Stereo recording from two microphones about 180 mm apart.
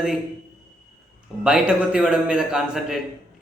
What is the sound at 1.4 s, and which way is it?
Speech, 5° right (ahead or behind).